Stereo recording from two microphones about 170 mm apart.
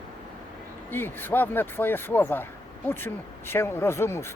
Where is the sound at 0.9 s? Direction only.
10° left (ahead or behind).